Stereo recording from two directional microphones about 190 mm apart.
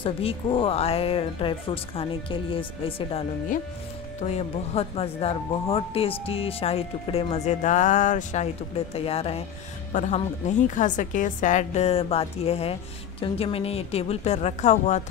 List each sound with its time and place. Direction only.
0.0 s speech: 30° left (ahead or behind)